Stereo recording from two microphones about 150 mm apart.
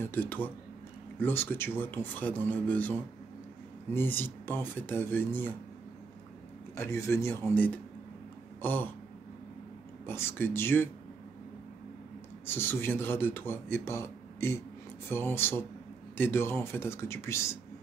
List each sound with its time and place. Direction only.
0.0 s speech: 10° left (ahead or behind)
6.8 s speech: 15° left (ahead or behind)
10.0 s speech: 15° left (ahead or behind)
12.4 s speech: 15° left (ahead or behind)